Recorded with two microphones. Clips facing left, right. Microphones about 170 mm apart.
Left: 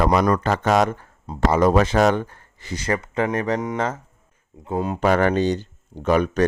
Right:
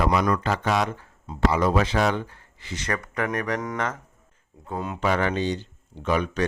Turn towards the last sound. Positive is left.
turn(degrees=45)  # may be behind; listen again after turning